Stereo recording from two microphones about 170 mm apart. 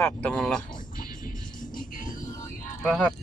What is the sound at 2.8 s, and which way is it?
Speech, 5° left (ahead or behind).